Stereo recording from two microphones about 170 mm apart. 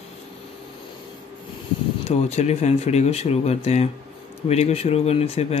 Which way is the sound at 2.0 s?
40° left (ahead or behind).